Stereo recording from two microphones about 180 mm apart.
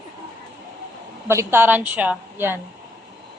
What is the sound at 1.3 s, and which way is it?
A woman's voice, 15° right (ahead or behind).